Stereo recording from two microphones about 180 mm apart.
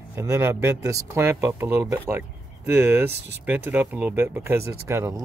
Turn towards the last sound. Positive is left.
turn(degrees=-15)  # may be behind; listen again after turning